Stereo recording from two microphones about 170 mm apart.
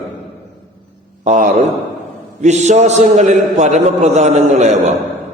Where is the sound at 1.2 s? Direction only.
45° right (ahead or behind).